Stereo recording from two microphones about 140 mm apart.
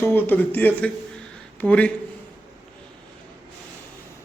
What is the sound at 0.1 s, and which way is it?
A man's voice, 15° left (ahead or behind).